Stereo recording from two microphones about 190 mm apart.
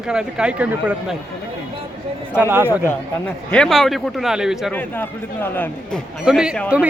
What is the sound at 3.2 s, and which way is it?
Speech, 5° left (ahead or behind).